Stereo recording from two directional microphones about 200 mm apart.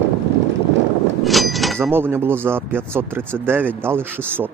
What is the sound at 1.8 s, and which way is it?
Speech, 10° right (ahead or behind).